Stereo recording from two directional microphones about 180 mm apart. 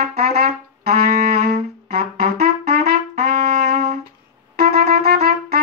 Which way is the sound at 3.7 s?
35° right (ahead or behind).